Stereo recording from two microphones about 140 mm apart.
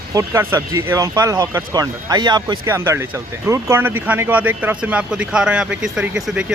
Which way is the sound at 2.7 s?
20° right (ahead or behind).